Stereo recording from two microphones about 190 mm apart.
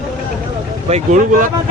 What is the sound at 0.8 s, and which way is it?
Speech, 35° right (ahead or behind).